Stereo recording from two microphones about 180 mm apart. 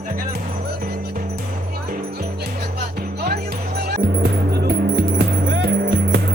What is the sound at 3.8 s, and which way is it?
Music, 65° right (ahead or behind).